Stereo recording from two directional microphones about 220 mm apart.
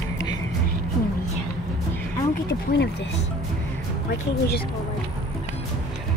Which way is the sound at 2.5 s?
50° left (ahead or behind).